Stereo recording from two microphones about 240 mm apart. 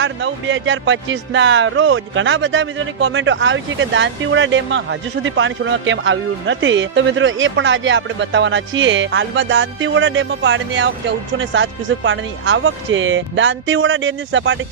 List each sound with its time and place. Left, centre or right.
0.0 s speech: right